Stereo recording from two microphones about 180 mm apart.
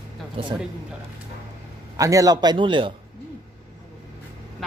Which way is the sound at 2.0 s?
20° right (ahead or behind).